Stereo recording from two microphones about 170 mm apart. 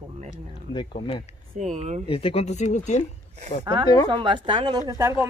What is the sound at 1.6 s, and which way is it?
Speech, 45° right (ahead or behind).